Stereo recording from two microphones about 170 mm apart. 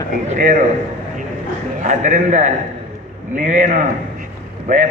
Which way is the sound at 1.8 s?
50° right (ahead or behind).